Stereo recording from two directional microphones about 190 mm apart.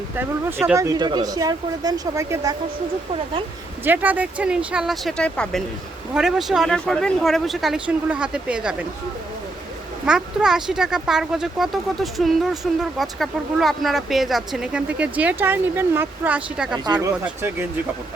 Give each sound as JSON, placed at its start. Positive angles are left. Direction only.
{"t": 0.2, "sound": "speech", "side_deg": -10}
{"t": 3.8, "sound": "speech", "side_deg": -10}
{"t": 10.1, "sound": "speech", "side_deg": -5}
{"t": 16.7, "sound": "speech", "side_deg": -20}